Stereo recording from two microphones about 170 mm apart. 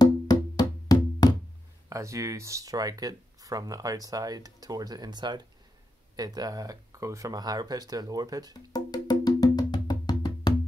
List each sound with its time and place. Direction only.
0.0 s music: 25° left (ahead or behind)
1.9 s speech: 20° right (ahead or behind)
8.5 s music: 25° left (ahead or behind)